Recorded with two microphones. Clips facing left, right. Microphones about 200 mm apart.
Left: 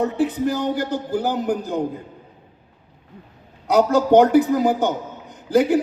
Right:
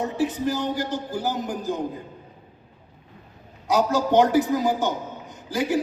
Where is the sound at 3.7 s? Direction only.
60° left (ahead or behind).